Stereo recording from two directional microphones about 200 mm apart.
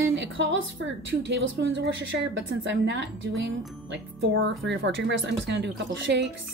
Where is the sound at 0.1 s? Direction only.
65° right (ahead or behind).